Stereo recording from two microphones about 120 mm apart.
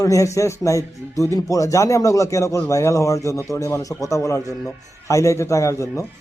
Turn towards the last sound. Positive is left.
turn(degrees=25)  # may be behind; listen again after turning